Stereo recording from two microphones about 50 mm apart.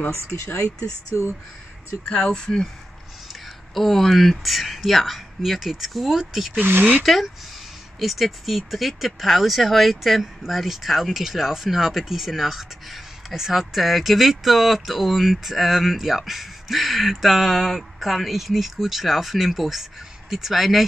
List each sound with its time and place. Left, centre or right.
0.7 s speech: left
2.0 s speech: centre
3.7 s speech: centre
6.6 s speech: right
8.0 s speech: centre